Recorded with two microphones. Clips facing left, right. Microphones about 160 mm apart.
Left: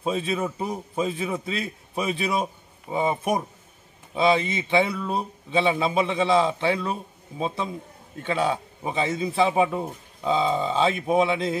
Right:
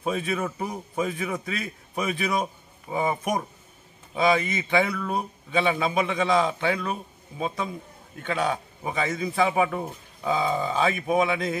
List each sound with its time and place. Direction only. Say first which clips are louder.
0.0 s speech: left 1 dB; 25° left (ahead or behind)